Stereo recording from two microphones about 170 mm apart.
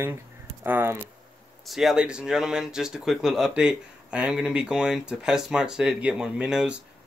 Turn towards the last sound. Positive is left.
turn(degrees=-5)  # may be behind; listen again after turning